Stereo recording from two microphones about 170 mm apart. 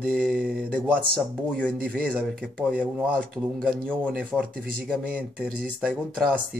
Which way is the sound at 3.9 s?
5° right (ahead or behind).